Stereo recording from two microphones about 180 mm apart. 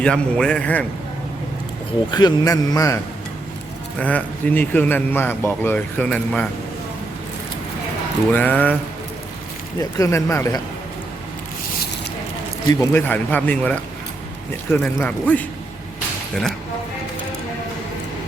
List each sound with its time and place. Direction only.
0.0 s a man's voice: 5° left (ahead or behind)
2.0 s a man's voice: 25° left (ahead or behind)
4.0 s a man's voice: 10° left (ahead or behind)
8.3 s a man's voice: 10° left (ahead or behind)
10.0 s a man's voice: 15° left (ahead or behind)
12.8 s a man's voice: 10° left (ahead or behind)